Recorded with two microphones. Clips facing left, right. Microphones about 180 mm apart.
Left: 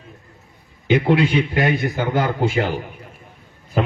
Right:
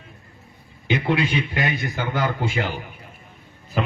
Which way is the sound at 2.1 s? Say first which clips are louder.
Left 4 dB; 50° left (ahead or behind).